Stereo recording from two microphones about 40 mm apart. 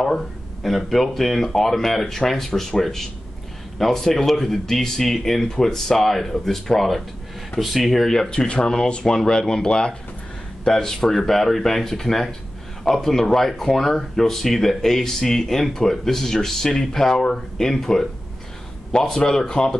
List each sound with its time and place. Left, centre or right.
0.7 s speech: centre
8.3 s speech: left